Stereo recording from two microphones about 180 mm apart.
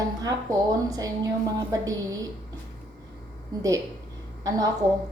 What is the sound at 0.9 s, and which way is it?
A woman's voice, 20° right (ahead or behind).